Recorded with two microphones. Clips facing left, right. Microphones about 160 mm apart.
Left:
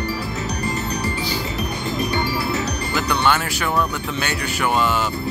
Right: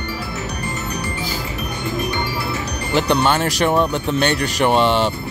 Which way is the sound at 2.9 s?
30° right (ahead or behind).